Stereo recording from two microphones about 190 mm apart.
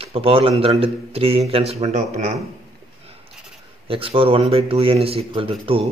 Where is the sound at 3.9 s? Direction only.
30° right (ahead or behind).